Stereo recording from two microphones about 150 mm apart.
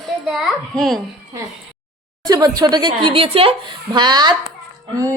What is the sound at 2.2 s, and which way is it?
A woman's voice, 25° right (ahead or behind).